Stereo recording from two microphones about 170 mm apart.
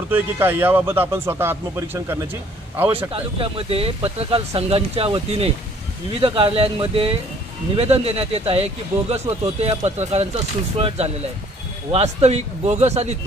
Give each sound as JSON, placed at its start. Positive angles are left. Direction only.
{"t": 0.1, "sound": "speech", "side_deg": -15}
{"t": 3.1, "sound": "speech", "side_deg": -35}